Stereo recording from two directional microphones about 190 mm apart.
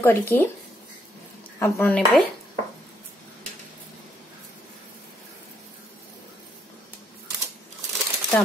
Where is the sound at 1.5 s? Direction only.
15° left (ahead or behind).